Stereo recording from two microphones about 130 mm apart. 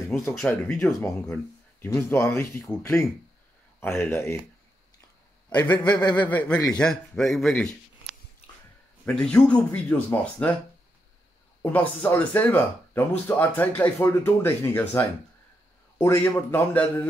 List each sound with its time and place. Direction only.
0.3 s speech: 5° left (ahead or behind)
0.7 s a man's voice: 20° left (ahead or behind)
3.8 s a man's voice: 20° left (ahead or behind)
5.6 s speech: 10° left (ahead or behind)
9.0 s speech: 5° left (ahead or behind)
11.6 s a man's voice: 15° left (ahead or behind)